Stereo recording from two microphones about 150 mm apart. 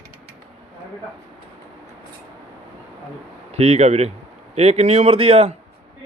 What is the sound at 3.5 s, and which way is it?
A man's voice, 45° right (ahead or behind).